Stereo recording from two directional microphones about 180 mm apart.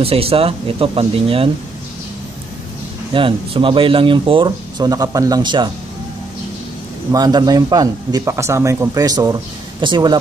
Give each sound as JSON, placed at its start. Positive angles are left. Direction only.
{"t": 0.0, "sound": "speech", "side_deg": -30}
{"t": 3.1, "sound": "speech", "side_deg": -30}
{"t": 7.1, "sound": "speech", "side_deg": -20}